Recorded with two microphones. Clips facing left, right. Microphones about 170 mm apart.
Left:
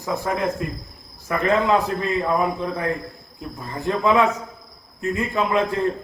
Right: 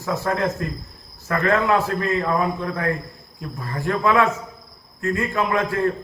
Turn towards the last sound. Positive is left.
turn(degrees=20)  # may be behind; listen again after turning